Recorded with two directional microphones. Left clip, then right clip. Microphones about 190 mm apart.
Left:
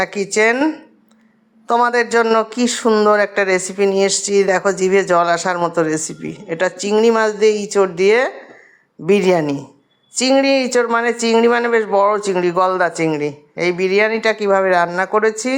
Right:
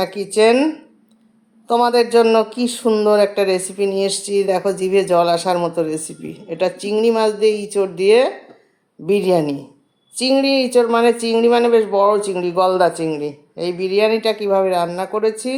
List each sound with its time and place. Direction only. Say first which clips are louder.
0.3 s speech: right 2 dB; 10° left (ahead or behind)
2.4 s speech: left 1 dB; 35° left (ahead or behind)
2.6 s speech: left 2 dB; 5° left (ahead or behind)